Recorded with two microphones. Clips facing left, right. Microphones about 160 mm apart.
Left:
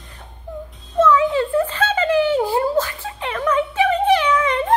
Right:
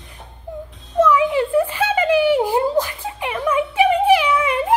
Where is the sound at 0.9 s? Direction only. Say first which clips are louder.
Even; 10° right (ahead or behind).